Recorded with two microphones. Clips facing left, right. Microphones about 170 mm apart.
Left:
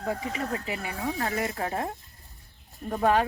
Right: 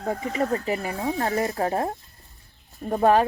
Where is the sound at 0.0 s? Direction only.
40° right (ahead or behind).